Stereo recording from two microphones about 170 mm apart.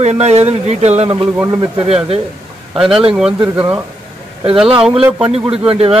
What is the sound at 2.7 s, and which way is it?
Speech, 5° right (ahead or behind).